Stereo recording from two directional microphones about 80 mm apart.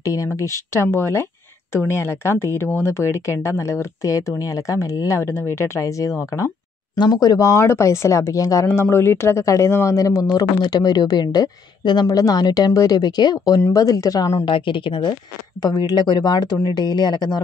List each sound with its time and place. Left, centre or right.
0.0 s speech: left
7.0 s speech: left
8.9 s speech: left
12.1 s a woman's voice: left
13.7 s speech: left
14.4 s a woman's voice: left
15.6 s a woman's voice: left